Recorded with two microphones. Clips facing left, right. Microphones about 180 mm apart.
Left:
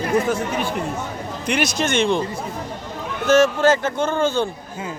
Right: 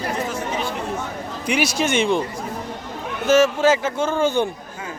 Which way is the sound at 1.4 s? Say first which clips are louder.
Right 1 dB; 10° right (ahead or behind).